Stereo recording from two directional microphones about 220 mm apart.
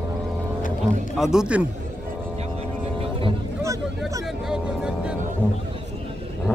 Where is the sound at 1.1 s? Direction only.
5° right (ahead or behind).